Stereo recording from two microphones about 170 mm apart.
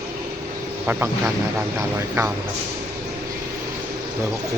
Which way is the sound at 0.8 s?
10° right (ahead or behind).